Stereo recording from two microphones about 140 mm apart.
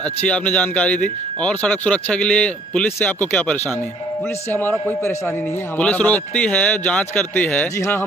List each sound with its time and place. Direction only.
0.0 s a man's voice: 10° left (ahead or behind)